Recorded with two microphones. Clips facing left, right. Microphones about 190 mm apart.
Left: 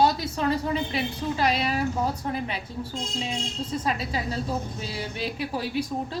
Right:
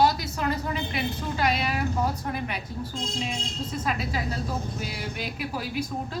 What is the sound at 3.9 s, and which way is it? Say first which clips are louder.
Speech: even; 30° left (ahead or behind).